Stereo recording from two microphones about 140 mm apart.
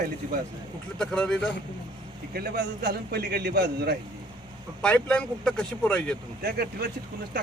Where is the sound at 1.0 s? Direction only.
5° left (ahead or behind).